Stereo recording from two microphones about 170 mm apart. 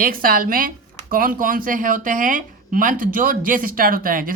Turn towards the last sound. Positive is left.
turn(degrees=-55)  # may be behind; listen again after turning